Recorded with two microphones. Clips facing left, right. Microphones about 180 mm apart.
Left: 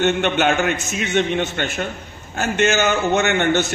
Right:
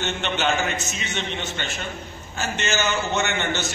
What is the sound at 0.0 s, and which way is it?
A man's voice, 55° left (ahead or behind).